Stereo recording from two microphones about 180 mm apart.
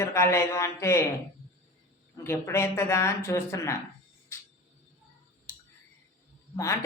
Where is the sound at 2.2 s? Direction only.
15° left (ahead or behind).